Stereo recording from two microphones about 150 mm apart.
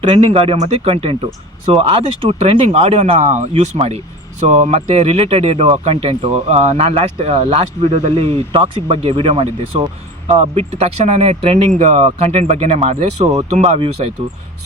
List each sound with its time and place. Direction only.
0.0 s speech: 40° right (ahead or behind)